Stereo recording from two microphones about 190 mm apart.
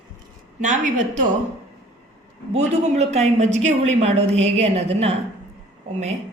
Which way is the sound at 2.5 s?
35° right (ahead or behind).